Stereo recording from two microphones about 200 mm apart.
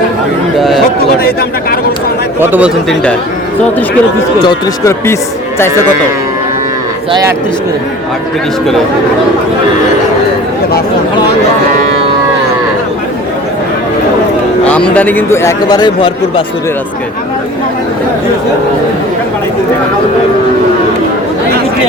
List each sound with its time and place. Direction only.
1.2 s speech: 50° left (ahead or behind)
2.4 s a man's voice: 10° right (ahead or behind)
4.4 s speech: 15° left (ahead or behind)
7.1 s a man's voice: 15° right (ahead or behind)
14.6 s speech: 5° left (ahead or behind); by 16.4 s 25° left (ahead or behind)